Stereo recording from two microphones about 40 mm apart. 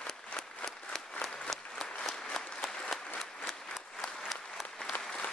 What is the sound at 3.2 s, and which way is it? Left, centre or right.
Applause, centre.